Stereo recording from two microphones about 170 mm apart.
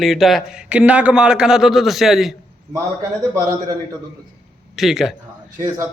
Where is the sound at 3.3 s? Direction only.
20° right (ahead or behind).